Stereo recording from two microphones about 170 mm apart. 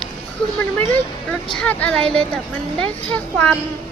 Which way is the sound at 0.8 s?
5° left (ahead or behind).